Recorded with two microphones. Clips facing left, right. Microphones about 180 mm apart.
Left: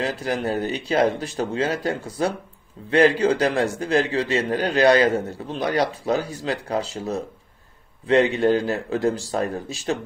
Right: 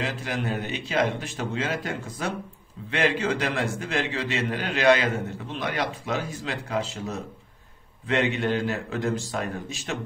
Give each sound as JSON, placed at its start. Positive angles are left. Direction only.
{"t": 0.0, "sound": "a man's voice", "side_deg": 40}